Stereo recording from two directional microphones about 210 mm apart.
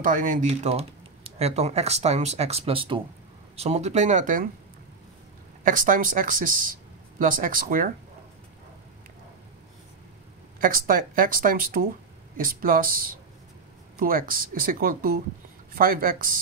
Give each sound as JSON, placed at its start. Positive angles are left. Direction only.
{"t": 0.0, "sound": "speech", "side_deg": -40}
{"t": 5.6, "sound": "speech", "side_deg": -40}
{"t": 10.6, "sound": "speech", "side_deg": -40}